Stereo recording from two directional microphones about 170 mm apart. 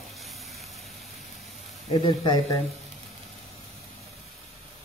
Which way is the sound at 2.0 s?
30° left (ahead or behind).